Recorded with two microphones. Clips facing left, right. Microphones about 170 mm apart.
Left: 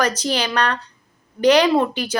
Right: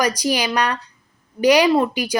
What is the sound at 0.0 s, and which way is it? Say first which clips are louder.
A woman's voice: right 1 dB; 10° right (ahead or behind).